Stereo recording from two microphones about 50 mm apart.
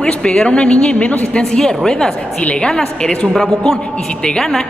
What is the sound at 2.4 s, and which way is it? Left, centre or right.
Speech, left.